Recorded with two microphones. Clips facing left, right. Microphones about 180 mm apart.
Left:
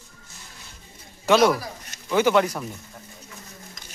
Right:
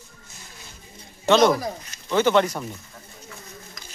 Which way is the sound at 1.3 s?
5° left (ahead or behind).